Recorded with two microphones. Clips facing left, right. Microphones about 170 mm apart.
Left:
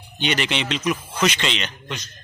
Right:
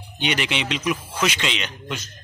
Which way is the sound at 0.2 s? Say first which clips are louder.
Left 1 dB; 10° right (ahead or behind).